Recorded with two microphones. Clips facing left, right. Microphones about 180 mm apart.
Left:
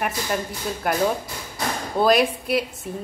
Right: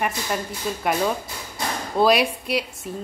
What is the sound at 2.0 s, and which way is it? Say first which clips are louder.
Speech: even; centre (ahead or behind).